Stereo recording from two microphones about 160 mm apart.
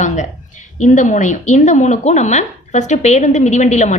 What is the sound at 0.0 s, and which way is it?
A woman's voice, 45° left (ahead or behind).